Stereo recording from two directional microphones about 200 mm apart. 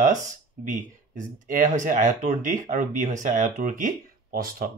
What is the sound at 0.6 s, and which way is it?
Speech, 40° right (ahead or behind).